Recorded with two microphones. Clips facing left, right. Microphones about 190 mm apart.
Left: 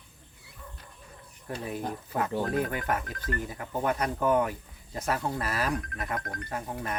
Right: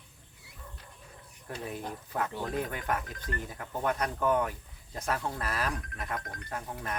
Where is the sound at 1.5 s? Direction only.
5° left (ahead or behind).